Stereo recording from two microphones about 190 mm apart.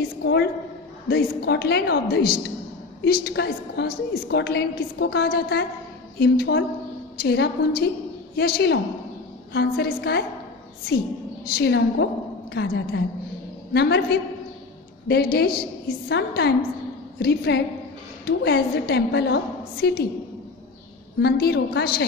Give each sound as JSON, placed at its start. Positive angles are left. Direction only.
{"t": 0.2, "sound": "a woman's voice", "side_deg": 65}
{"t": 11.4, "sound": "a woman's voice", "side_deg": 55}
{"t": 21.2, "sound": "a woman's voice", "side_deg": 60}